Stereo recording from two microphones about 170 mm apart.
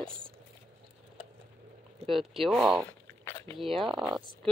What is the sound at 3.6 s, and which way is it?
Speech, centre (ahead or behind).